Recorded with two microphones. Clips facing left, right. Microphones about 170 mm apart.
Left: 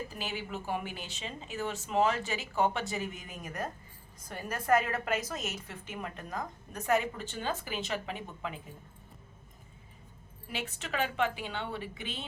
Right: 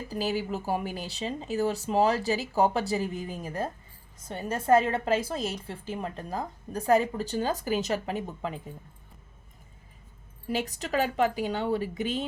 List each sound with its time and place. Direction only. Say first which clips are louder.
0.1 s a woman's voice: right 9 dB; 35° right (ahead or behind)
10.5 s speech: right 8 dB; 40° right (ahead or behind)